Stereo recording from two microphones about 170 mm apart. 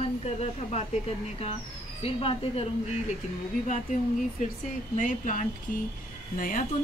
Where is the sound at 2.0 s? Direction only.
35° left (ahead or behind).